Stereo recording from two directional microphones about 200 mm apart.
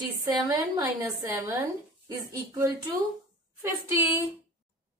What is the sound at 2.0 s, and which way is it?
Speech, 15° right (ahead or behind).